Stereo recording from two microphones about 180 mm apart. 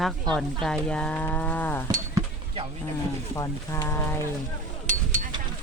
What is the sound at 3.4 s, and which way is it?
Speech, 15° left (ahead or behind).